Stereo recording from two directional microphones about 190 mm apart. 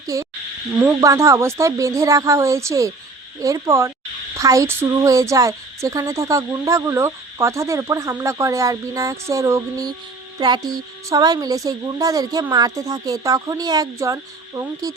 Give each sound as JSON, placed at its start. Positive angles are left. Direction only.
{"t": 0.1, "sound": "a woman's voice", "side_deg": -15}